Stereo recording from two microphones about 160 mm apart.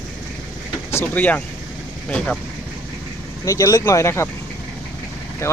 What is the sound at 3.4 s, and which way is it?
Speech, 20° left (ahead or behind).